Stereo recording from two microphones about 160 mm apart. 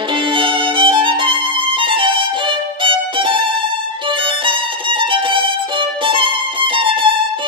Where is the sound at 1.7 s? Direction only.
30° right (ahead or behind).